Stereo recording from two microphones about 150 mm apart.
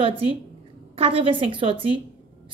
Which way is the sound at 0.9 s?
40° right (ahead or behind).